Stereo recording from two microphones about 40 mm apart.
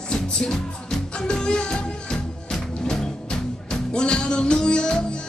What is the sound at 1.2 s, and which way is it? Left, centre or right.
Music, left.